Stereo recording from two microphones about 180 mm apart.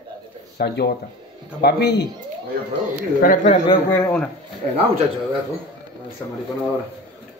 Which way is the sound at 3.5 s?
25° left (ahead or behind).